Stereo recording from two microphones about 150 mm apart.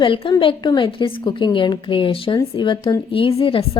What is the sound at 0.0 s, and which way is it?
A woman's voice, 35° left (ahead or behind).